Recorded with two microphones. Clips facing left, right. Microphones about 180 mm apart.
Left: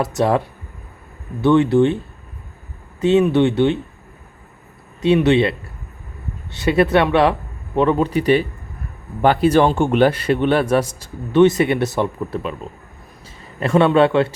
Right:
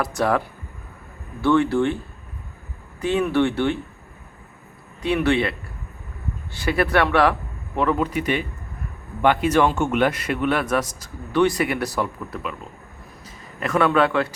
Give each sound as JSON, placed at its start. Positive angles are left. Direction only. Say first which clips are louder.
{"t": 0.0, "sound": "a man's voice", "louder": "left 4 dB", "side_deg": 20}
{"t": 3.0, "sound": "a man's voice", "louder": "left 6 dB", "side_deg": 20}
{"t": 5.0, "sound": "a man's voice", "louder": "left 6 dB", "side_deg": 20}